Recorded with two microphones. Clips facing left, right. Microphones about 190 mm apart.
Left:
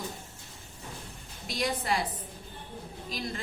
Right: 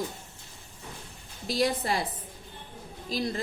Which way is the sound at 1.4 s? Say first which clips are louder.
Right 4 dB; 35° right (ahead or behind).